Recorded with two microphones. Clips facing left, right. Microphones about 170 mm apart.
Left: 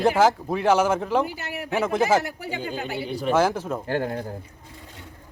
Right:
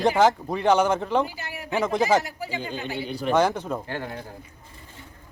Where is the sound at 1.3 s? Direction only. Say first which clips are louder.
Left 4 dB; 60° left (ahead or behind).